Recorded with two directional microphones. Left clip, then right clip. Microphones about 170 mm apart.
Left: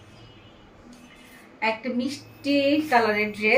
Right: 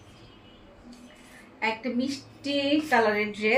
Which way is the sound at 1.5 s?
20° left (ahead or behind).